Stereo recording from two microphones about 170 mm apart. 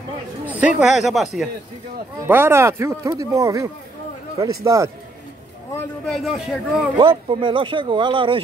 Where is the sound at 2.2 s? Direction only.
15° right (ahead or behind).